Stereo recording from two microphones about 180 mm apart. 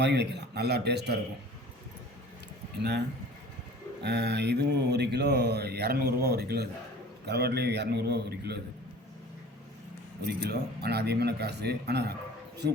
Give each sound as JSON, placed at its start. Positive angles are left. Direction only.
{"t": 0.0, "sound": "mantra", "side_deg": -70}
{"t": 4.0, "sound": "mantra", "side_deg": -70}
{"t": 7.3, "sound": "speech", "side_deg": -65}
{"t": 10.2, "sound": "speech", "side_deg": -65}